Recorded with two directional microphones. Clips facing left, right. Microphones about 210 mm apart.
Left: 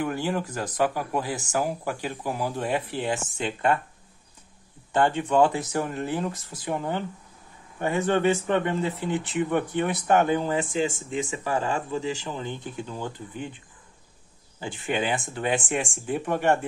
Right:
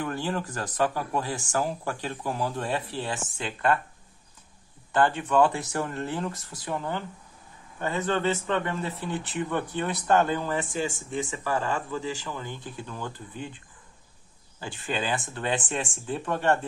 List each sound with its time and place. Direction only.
0.0 s speech: 10° left (ahead or behind)
4.9 s speech: 20° left (ahead or behind)
14.6 s speech: 20° left (ahead or behind)